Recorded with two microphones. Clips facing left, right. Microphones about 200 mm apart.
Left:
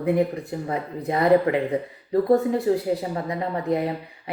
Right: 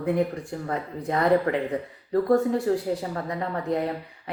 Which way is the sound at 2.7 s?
15° left (ahead or behind).